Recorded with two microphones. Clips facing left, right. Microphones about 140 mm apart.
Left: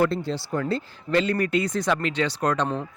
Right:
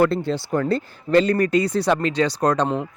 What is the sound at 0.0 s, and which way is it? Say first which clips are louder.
Speech: right 4 dB; 60° right (ahead or behind).